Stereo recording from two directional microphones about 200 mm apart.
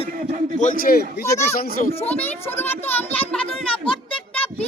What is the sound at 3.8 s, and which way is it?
Music, 25° left (ahead or behind).